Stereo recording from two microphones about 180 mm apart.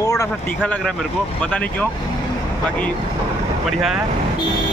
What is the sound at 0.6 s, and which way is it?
Speech, 5° left (ahead or behind).